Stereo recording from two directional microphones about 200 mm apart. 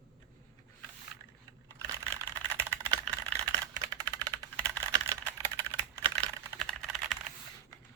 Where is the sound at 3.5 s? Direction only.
15° right (ahead or behind).